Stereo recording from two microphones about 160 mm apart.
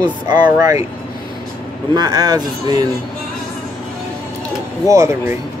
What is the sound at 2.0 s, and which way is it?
Speech, 25° right (ahead or behind).